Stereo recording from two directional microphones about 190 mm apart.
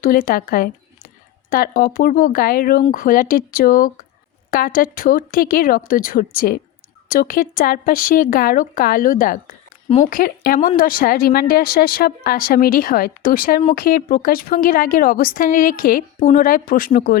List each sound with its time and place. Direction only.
0.0 s a woman's voice: 50° left (ahead or behind)